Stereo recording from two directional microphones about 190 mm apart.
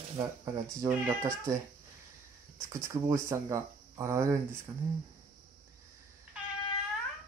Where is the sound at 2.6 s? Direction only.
15° right (ahead or behind).